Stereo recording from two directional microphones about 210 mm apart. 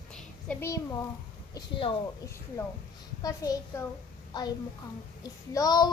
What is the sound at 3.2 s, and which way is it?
Speech, 15° left (ahead or behind).